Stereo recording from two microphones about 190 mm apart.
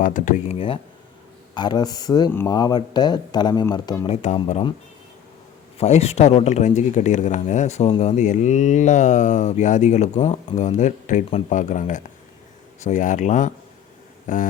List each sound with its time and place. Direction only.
0.0 s speech: 45° left (ahead or behind)
1.5 s speech: 20° left (ahead or behind)
4.1 s speech: 35° left (ahead or behind)
5.7 s speech: 35° left (ahead or behind)